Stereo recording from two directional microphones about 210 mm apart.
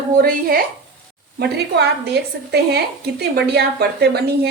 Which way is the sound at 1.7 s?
50° right (ahead or behind).